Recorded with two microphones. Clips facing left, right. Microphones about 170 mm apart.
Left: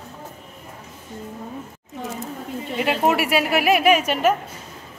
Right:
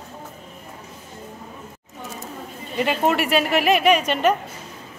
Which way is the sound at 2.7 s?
5° left (ahead or behind).